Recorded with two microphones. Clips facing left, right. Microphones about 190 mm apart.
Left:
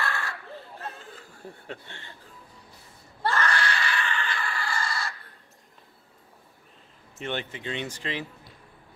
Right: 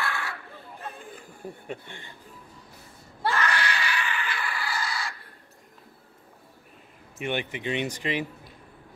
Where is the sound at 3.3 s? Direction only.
5° right (ahead or behind).